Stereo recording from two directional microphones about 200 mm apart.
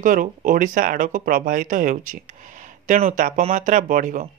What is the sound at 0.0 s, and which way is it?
Speech, 40° right (ahead or behind).